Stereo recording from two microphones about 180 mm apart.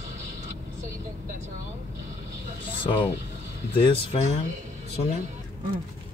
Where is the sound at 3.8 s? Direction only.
30° left (ahead or behind).